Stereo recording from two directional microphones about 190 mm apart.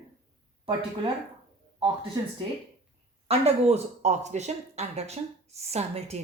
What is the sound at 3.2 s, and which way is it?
Speech, 35° right (ahead or behind).